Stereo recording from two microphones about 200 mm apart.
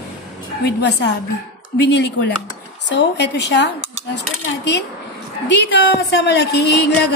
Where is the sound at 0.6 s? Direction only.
60° left (ahead or behind).